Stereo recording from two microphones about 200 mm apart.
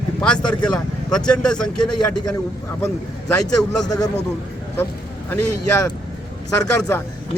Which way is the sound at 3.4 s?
20° left (ahead or behind).